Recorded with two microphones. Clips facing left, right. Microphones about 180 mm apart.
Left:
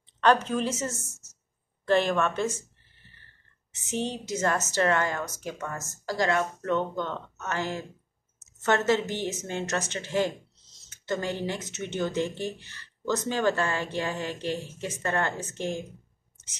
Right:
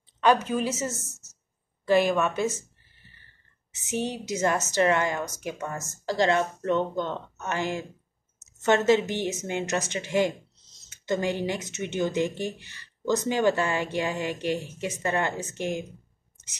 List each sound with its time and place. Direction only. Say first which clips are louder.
0.2 s speech: right 1 dB; 10° right (ahead or behind)
3.9 s speech: right 1 dB; 10° right (ahead or behind)